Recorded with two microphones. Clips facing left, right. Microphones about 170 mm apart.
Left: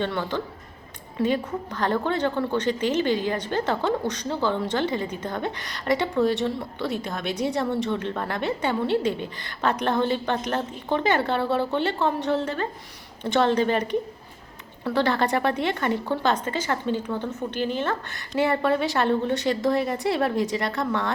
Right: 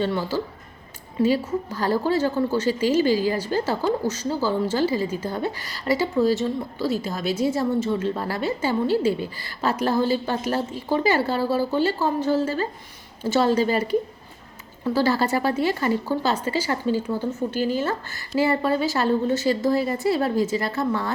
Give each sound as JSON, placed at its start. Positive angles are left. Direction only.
{"t": 0.0, "sound": "a woman's voice", "side_deg": -5}
{"t": 14.9, "sound": "speech", "side_deg": -5}